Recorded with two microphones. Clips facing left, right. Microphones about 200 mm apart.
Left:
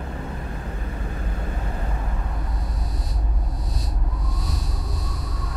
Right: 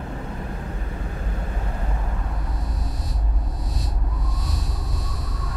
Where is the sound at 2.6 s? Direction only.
Centre (ahead or behind).